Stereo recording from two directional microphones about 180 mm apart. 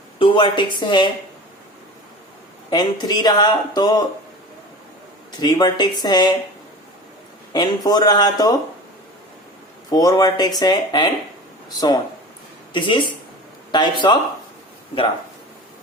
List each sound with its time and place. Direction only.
0.2 s speech: 25° left (ahead or behind)
2.6 s speech: 20° left (ahead or behind)
5.4 s speech: 25° left (ahead or behind)
7.5 s speech: 20° left (ahead or behind)
9.9 s speech: 20° left (ahead or behind)
12.7 s speech: 25° left (ahead or behind)